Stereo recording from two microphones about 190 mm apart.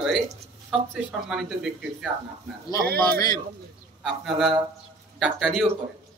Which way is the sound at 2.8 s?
55° right (ahead or behind).